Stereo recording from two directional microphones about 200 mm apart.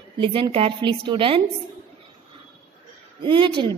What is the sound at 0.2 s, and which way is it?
A woman's voice, 25° right (ahead or behind).